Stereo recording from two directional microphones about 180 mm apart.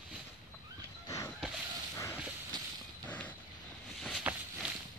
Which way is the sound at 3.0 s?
10° left (ahead or behind).